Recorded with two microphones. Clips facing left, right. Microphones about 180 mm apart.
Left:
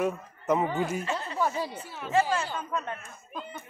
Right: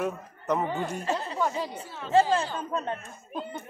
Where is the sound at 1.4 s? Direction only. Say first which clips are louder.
Left 3 dB; 5° left (ahead or behind).